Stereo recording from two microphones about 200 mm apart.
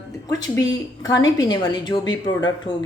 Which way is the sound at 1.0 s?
20° left (ahead or behind).